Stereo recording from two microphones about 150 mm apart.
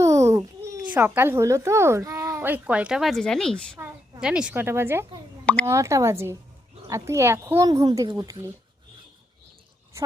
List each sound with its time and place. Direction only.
0.0 s a sound: 20° right (ahead or behind)
0.9 s speech: 10° right (ahead or behind); by 3.8 s 5° left (ahead or behind)
4.2 s speech: 5° right (ahead or behind); by 8.4 s 20° right (ahead or behind)